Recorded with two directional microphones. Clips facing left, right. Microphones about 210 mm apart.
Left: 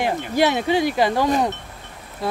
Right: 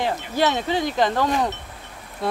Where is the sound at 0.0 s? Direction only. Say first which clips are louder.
Left 3 dB; 10° left (ahead or behind).